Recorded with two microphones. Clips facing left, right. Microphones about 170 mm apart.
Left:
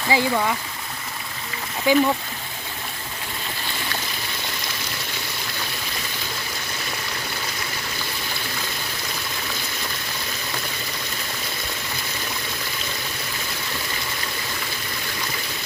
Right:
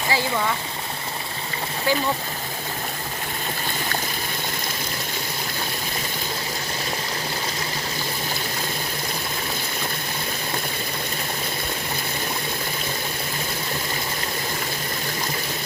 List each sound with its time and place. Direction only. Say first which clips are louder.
0.1 s speech: left 5 dB; 15° left (ahead or behind)
1.9 s speech: left 6 dB; 15° left (ahead or behind)